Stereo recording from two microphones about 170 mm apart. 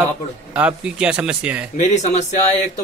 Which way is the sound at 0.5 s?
5° right (ahead or behind).